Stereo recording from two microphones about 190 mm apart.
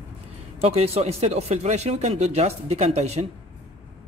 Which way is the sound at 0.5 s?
30° right (ahead or behind).